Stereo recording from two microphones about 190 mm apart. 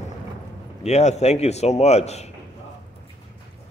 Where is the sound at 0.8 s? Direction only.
35° left (ahead or behind).